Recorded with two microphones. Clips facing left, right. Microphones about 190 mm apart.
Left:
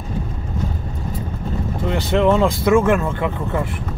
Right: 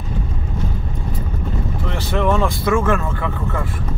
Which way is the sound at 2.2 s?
20° left (ahead or behind).